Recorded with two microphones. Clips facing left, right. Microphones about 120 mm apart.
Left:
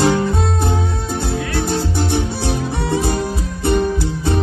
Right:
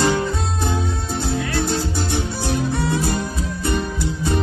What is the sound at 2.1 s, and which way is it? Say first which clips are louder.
Music: left 3 dB; 70° left (ahead or behind).